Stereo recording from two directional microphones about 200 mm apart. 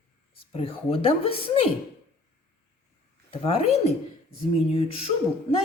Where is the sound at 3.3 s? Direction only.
30° left (ahead or behind).